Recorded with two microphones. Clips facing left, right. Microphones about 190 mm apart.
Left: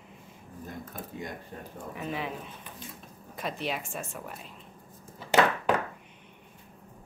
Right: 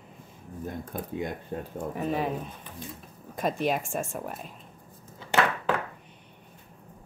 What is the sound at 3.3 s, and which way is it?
Speech, 45° right (ahead or behind).